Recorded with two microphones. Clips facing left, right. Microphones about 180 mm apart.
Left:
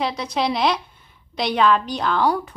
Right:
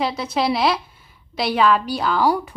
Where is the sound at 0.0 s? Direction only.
5° right (ahead or behind).